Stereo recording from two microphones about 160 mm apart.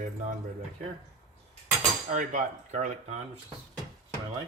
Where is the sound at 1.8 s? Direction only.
50° right (ahead or behind).